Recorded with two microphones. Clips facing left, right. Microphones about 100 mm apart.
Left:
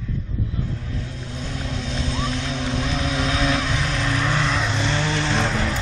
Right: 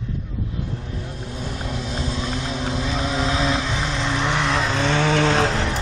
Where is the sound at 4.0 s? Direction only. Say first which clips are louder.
Right 1 dB; 20° right (ahead or behind).